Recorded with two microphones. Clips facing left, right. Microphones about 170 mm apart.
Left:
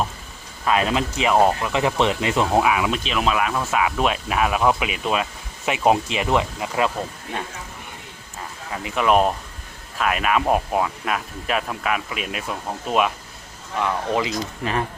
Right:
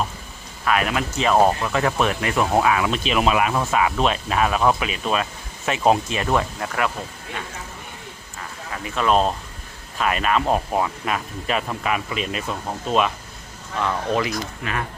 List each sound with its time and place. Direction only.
0.6 s speech: 25° left (ahead or behind)
2.9 s speech: 5° right (ahead or behind)
3.7 s speech: 5° left (ahead or behind)
8.7 s speech: 15° left (ahead or behind)
14.6 s speech: 30° left (ahead or behind)